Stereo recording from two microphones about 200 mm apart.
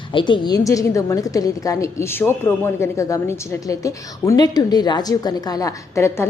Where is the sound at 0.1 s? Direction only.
25° left (ahead or behind).